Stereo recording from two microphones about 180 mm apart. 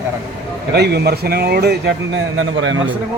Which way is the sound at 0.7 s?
65° right (ahead or behind).